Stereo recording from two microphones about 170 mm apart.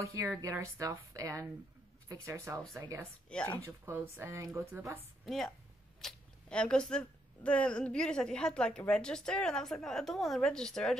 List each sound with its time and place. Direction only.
0.0 s speech: 15° right (ahead or behind)
3.3 s speech: 5° left (ahead or behind)
3.8 s speech: 15° right (ahead or behind)
5.2 s a woman's voice: centre (ahead or behind)